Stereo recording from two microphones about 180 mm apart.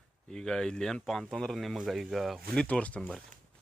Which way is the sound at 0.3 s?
5° left (ahead or behind).